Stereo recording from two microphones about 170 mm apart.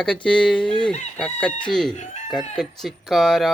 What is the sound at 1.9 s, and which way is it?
Chicken, 45° left (ahead or behind).